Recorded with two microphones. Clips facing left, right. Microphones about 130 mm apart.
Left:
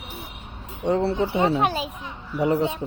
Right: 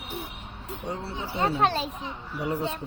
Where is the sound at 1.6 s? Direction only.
10° left (ahead or behind).